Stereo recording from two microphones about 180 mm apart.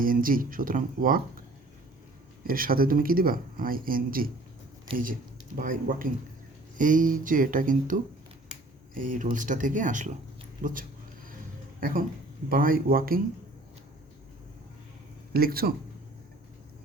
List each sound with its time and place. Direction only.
0.0 s speech: 50° right (ahead or behind)
2.5 s speech: 55° right (ahead or behind)
4.9 s speech: 30° right (ahead or behind)
5.5 s speech: 50° right (ahead or behind)
9.0 s a man's voice: 45° right (ahead or behind)
12.5 s speech: 50° right (ahead or behind)
15.3 s speech: 55° right (ahead or behind)